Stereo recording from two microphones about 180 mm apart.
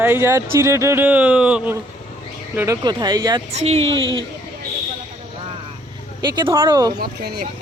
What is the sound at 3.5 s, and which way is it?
Speech, 35° right (ahead or behind).